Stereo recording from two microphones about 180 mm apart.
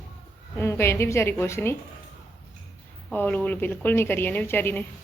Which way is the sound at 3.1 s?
10° left (ahead or behind).